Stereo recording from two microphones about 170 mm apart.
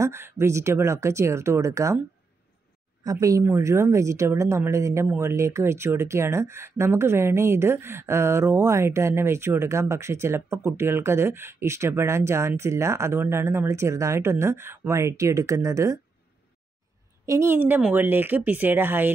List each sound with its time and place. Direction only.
0.0 s speech: 15° right (ahead or behind)
3.0 s speech: 20° right (ahead or behind)
17.3 s speech: 15° right (ahead or behind)